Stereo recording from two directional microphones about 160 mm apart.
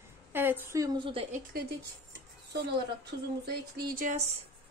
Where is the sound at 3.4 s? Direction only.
90° right.